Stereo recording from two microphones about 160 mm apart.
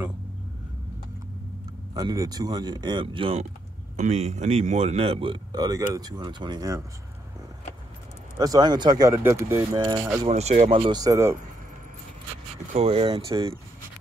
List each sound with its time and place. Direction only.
2.0 s speech: 25° right (ahead or behind)
3.9 s speech: 45° right (ahead or behind); by 6.8 s 25° right (ahead or behind)
8.4 s speech: 25° right (ahead or behind)
10.2 s speech: 45° right (ahead or behind)
10.6 s speech: 35° right (ahead or behind)
12.7 s speech: 40° right (ahead or behind)